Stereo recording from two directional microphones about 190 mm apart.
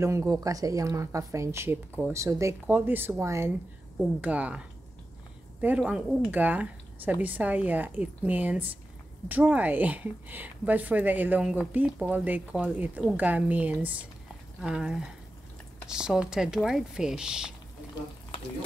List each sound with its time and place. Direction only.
0.0 s speech: 15° right (ahead or behind)